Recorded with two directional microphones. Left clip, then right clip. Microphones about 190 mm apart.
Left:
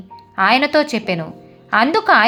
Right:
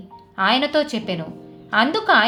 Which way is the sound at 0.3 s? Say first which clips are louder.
Left 4 dB; 35° left (ahead or behind).